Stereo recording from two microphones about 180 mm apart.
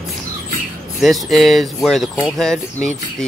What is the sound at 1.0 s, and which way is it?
Speech, centre (ahead or behind).